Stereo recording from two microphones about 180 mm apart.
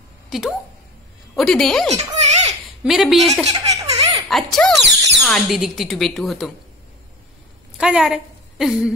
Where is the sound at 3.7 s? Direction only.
20° right (ahead or behind).